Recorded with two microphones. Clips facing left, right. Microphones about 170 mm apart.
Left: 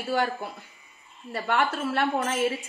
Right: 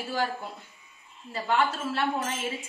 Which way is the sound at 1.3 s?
60° left (ahead or behind).